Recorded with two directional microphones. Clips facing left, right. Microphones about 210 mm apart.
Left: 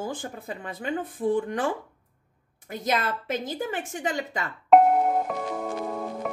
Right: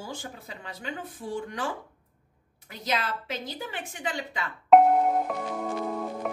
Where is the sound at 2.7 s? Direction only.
50° left (ahead or behind).